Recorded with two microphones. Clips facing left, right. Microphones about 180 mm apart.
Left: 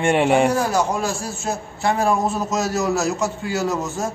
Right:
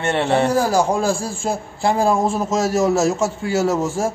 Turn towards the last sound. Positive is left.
turn(degrees=-25)  # may be behind; listen again after turning